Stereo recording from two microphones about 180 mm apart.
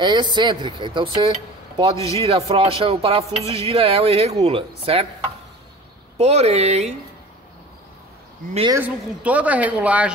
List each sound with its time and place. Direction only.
0.0 s speech: 25° right (ahead or behind)
6.1 s speech: 35° right (ahead or behind)
8.7 s a woman's voice: 10° right (ahead or behind)